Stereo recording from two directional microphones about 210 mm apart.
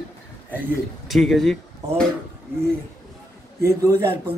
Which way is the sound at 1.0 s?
Centre (ahead or behind).